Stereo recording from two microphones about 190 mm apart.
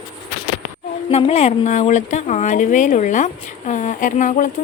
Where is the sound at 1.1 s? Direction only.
35° left (ahead or behind).